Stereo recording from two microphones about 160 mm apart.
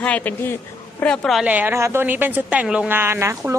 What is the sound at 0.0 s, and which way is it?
A woman's voice, 10° left (ahead or behind).